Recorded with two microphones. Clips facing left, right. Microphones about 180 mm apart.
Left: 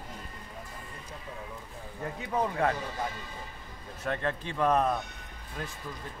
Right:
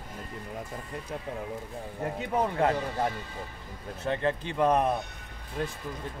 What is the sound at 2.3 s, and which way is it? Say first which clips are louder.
Speech: right 2 dB; 25° right (ahead or behind).